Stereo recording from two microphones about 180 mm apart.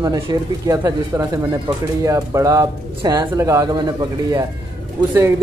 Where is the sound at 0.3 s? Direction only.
25° right (ahead or behind).